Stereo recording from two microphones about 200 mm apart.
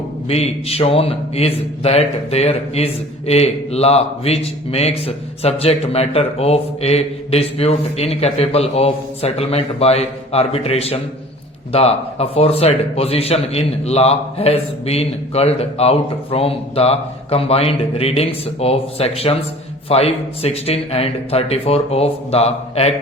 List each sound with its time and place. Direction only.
0.3 s a man's voice: 30° left (ahead or behind)